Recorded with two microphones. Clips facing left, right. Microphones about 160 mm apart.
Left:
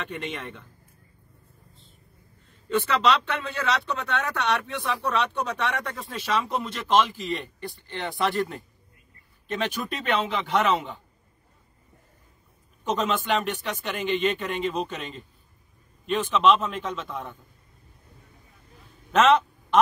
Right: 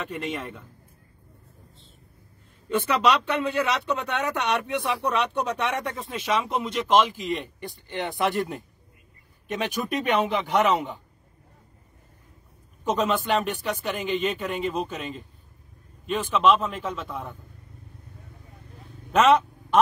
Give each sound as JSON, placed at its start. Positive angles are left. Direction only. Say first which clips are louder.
{"t": 0.0, "sound": "a man's voice", "louder": "right 2 dB", "side_deg": 0}
{"t": 2.7, "sound": "speech", "louder": "right 1 dB", "side_deg": -10}
{"t": 12.8, "sound": "speech", "louder": "right 2 dB", "side_deg": -5}
{"t": 19.1, "sound": "a sound", "louder": "right 1 dB", "side_deg": -5}